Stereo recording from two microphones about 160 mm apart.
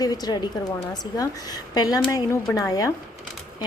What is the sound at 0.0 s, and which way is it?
Speech, 25° left (ahead or behind).